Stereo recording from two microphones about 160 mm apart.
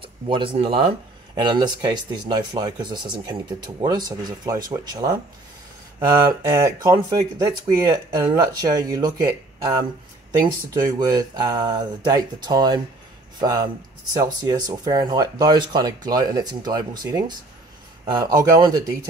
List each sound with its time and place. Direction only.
0.0 s speech: 30° right (ahead or behind)